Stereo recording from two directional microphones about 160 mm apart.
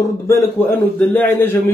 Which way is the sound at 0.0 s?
15° left (ahead or behind).